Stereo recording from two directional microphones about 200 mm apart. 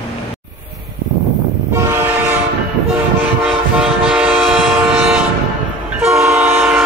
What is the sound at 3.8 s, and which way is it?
Train, 5° right (ahead or behind).